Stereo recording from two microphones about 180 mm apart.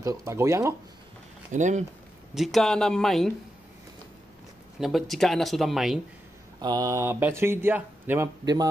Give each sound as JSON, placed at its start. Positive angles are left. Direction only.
{"t": 0.0, "sound": "speech", "side_deg": -15}
{"t": 1.5, "sound": "speech", "side_deg": -40}
{"t": 2.3, "sound": "speech", "side_deg": 0}
{"t": 4.7, "sound": "speech", "side_deg": 0}
{"t": 6.6, "sound": "speech", "side_deg": -20}